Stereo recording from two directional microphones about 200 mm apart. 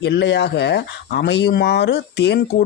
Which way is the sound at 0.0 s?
60° left (ahead or behind).